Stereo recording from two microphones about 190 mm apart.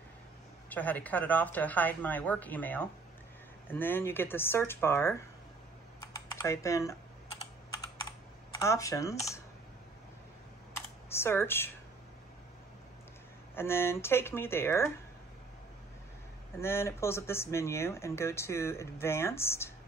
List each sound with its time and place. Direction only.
0.7 s speech: 10° left (ahead or behind)
6.1 s speech: 15° left (ahead or behind)
8.5 s speech: 15° left (ahead or behind)
10.7 s computer keyboard: 15° left (ahead or behind)
13.6 s speech: 15° left (ahead or behind)
16.5 s speech: 15° left (ahead or behind)